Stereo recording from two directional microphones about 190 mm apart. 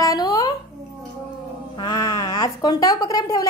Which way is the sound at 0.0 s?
20° left (ahead or behind).